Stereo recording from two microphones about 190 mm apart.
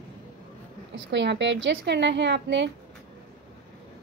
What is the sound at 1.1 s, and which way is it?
A woman's voice, 65° right (ahead or behind).